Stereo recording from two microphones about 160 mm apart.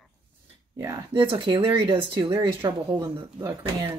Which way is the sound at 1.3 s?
30° right (ahead or behind).